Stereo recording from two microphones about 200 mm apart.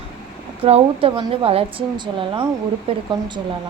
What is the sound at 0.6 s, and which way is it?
Speech, 30° right (ahead or behind).